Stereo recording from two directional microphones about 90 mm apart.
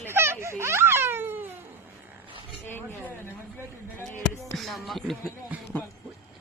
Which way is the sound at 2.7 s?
25° left (ahead or behind).